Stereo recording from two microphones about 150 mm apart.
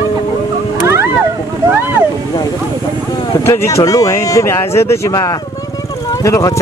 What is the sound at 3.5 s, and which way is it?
Speech, 20° left (ahead or behind).